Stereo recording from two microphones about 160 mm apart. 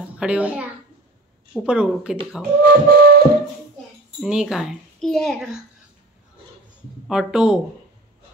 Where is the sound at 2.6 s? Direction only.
75° right (ahead or behind).